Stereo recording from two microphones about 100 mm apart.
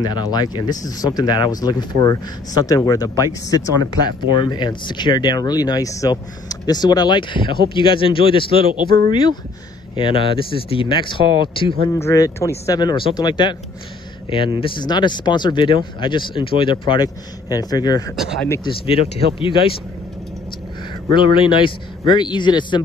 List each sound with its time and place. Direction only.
0.0 s speech: 40° left (ahead or behind)
4.4 s speech: 50° left (ahead or behind)
9.1 s speech: 50° left (ahead or behind)
9.9 s speech: 60° left (ahead or behind)
11.9 s speech: 30° left (ahead or behind)
12.7 s speech: 50° left (ahead or behind)
17.5 s speech: 40° left (ahead or behind)
18.6 s speech: 70° left (ahead or behind)
21.1 s speech: 55° left (ahead or behind)